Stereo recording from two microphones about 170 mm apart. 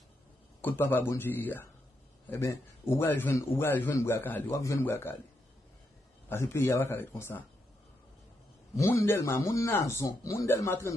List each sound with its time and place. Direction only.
0.6 s a man's voice: 10° left (ahead or behind)
6.2 s a man's voice: 15° left (ahead or behind)
8.7 s a man's voice: 15° left (ahead or behind)